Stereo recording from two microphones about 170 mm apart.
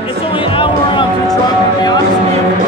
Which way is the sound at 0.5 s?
30° left (ahead or behind).